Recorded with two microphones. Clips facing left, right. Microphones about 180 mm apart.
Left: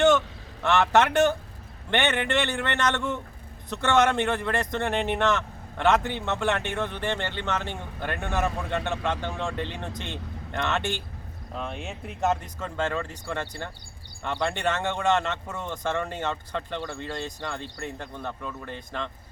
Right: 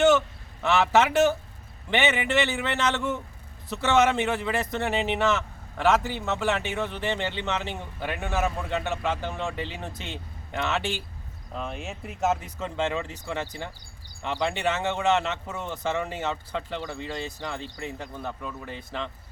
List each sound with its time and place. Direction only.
0.6 s speech: 5° right (ahead or behind)